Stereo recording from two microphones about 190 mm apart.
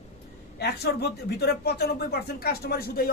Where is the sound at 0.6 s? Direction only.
60° left (ahead or behind).